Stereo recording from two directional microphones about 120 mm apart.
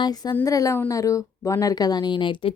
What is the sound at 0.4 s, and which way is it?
Speech, 30° left (ahead or behind).